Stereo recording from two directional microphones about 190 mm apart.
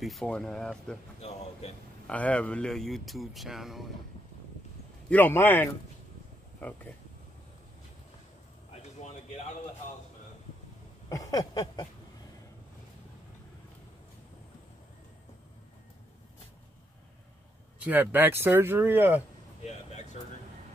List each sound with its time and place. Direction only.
0.0 s speech: centre (ahead or behind)
1.6 s a man's voice: 35° left (ahead or behind)
2.0 s speech: 5° left (ahead or behind)
5.1 s a man's voice: 10° left (ahead or behind)
11.1 s a sound: 15° left (ahead or behind)
17.8 s speech: 10° right (ahead or behind)
19.6 s air conditioning: 35° left (ahead or behind)